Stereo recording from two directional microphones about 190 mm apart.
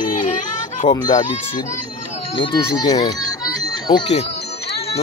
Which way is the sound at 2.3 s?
20° left (ahead or behind).